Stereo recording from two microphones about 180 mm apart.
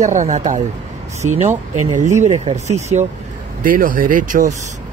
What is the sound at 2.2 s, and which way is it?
Speech, 35° right (ahead or behind).